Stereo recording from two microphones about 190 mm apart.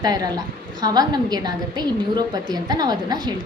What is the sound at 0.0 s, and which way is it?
A woman's voice, 20° right (ahead or behind).